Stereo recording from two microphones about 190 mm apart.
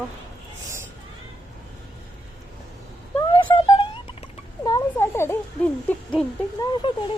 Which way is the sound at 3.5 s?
25° left (ahead or behind).